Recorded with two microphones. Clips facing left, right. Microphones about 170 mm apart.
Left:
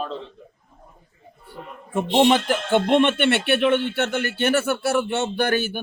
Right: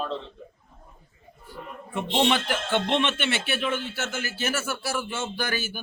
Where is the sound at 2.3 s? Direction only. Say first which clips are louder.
Left 6 dB; 45° left (ahead or behind).